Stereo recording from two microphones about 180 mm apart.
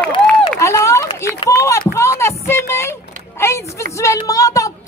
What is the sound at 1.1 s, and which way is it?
Speech, 15° left (ahead or behind).